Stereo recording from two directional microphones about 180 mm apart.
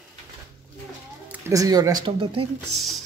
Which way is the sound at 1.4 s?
20° right (ahead or behind).